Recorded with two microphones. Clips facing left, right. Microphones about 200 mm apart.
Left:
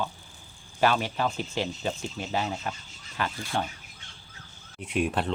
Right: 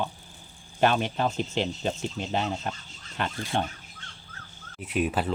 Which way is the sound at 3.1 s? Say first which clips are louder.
Right 1 dB; 20° right (ahead or behind).